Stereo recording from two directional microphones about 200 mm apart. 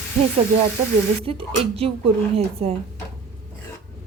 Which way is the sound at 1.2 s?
30° right (ahead or behind).